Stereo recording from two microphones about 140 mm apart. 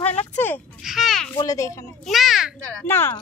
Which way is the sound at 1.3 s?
25° left (ahead or behind).